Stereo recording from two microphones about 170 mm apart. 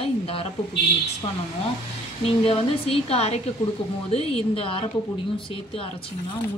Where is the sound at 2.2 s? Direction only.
35° left (ahead or behind).